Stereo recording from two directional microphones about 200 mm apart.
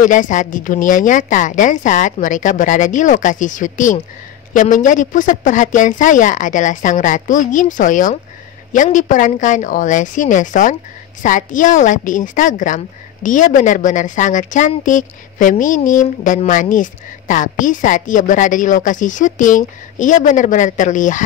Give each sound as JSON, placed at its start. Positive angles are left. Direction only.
{"t": 0.0, "sound": "a woman's voice", "side_deg": 40}